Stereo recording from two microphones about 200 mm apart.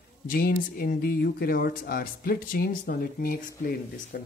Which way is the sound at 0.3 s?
45° left (ahead or behind).